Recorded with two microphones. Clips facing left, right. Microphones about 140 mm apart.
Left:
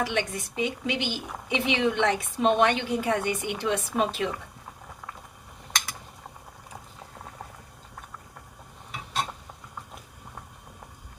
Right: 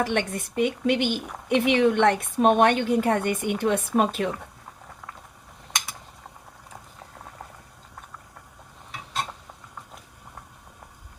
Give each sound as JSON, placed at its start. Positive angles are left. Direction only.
{"t": 0.0, "sound": "a woman's voice", "side_deg": -55}